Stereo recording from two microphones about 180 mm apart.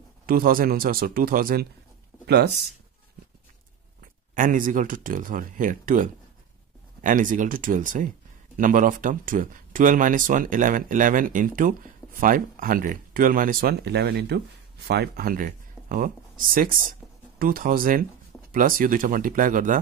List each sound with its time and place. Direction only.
0.3 s speech: 50° right (ahead or behind)
2.2 s speech: 65° right (ahead or behind)
4.4 s speech: 45° right (ahead or behind)